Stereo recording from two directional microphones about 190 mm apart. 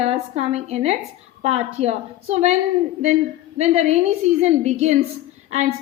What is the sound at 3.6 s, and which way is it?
A woman's voice, 35° right (ahead or behind).